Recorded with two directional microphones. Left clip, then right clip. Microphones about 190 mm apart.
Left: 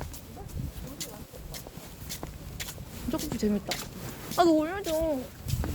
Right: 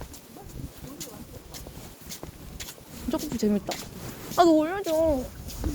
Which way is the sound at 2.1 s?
30° left (ahead or behind).